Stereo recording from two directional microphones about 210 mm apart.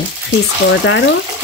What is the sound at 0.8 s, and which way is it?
Speech, 60° left (ahead or behind).